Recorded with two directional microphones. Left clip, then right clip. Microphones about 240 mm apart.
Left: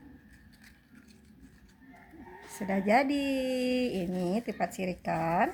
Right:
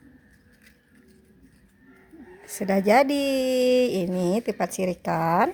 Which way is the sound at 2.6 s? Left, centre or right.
Right.